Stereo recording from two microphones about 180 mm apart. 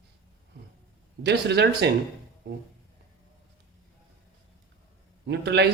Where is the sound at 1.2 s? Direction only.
70° right (ahead or behind).